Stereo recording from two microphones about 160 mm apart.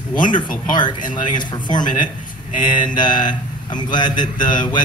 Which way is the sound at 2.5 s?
55° left (ahead or behind).